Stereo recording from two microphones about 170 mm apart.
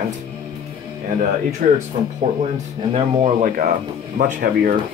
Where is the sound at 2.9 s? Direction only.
45° right (ahead or behind).